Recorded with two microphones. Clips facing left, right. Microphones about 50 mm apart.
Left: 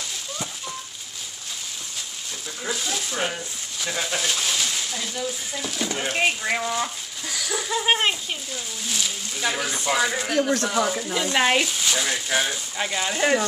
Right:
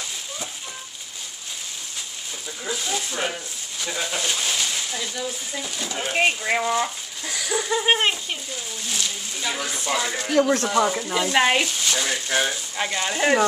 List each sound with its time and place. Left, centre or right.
2.6 s speech: centre
10.4 s speech: right
10.7 s speech: centre